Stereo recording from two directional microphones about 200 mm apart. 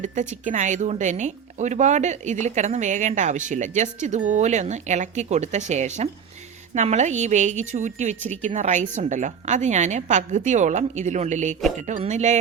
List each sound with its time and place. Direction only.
0.0 s speech: 40° right (ahead or behind)